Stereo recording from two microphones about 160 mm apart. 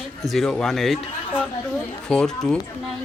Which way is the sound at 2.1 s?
5° left (ahead or behind).